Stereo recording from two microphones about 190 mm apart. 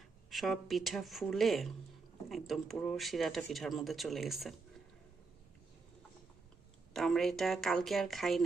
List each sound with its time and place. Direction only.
0.3 s speech: centre (ahead or behind)
6.9 s speech: centre (ahead or behind)